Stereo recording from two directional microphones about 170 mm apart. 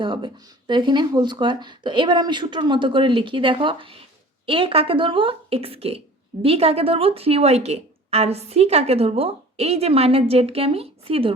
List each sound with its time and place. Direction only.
0.0 s speech: 25° right (ahead or behind)